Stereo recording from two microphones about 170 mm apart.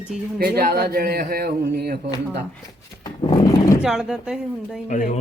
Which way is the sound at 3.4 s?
20° left (ahead or behind).